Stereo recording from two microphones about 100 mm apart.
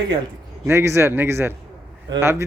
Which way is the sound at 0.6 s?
25° right (ahead or behind).